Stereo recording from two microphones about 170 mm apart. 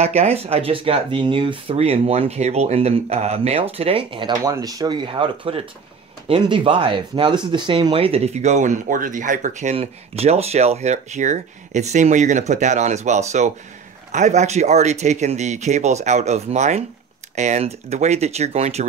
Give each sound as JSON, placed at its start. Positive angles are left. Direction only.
{"t": 0.0, "sound": "speech", "side_deg": -40}